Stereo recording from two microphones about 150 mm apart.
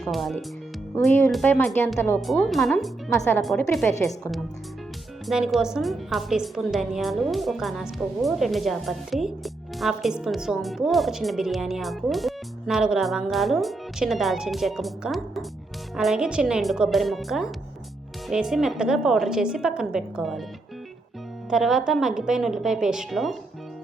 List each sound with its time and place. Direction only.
0.0 s a woman's voice: centre (ahead or behind)
1.5 s speech: 15° left (ahead or behind)
2.1 s a woman's voice: centre (ahead or behind)
5.2 s a woman's voice: centre (ahead or behind)
21.5 s a woman's voice: centre (ahead or behind)